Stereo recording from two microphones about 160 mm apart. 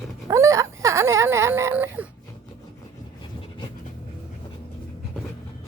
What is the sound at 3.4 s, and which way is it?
Dog, 30° left (ahead or behind).